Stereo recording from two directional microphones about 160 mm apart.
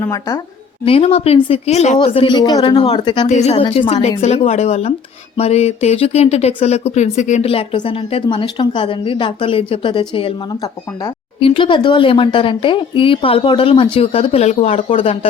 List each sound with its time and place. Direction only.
0.0 s speech: 20° left (ahead or behind)
0.9 s speech: 35° left (ahead or behind)
2.0 s speech: 30° left (ahead or behind)
3.2 s speech: 45° left (ahead or behind)